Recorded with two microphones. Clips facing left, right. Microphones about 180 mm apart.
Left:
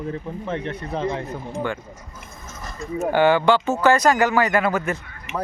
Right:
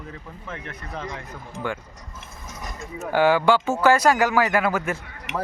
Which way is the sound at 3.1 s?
5° right (ahead or behind).